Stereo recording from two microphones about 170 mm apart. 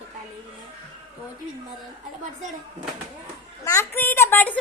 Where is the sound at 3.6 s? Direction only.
15° left (ahead or behind).